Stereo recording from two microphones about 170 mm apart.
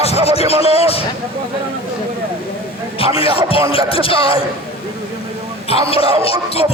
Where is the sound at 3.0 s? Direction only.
35° left (ahead or behind).